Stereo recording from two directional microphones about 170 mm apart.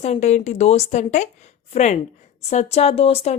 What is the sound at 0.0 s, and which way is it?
Speech, 40° left (ahead or behind).